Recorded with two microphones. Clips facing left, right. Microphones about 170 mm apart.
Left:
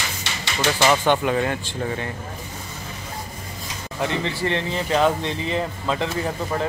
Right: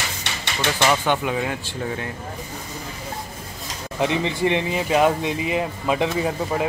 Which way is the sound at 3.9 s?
15° right (ahead or behind).